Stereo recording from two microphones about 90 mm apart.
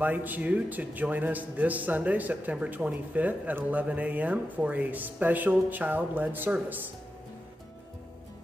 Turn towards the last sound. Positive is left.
turn(degrees=-20)  # may be behind; listen again after turning